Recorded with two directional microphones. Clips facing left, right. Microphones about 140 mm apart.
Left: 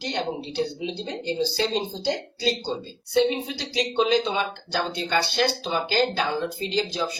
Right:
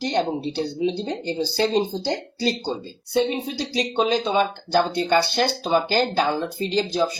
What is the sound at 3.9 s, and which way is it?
Speech, 35° right (ahead or behind).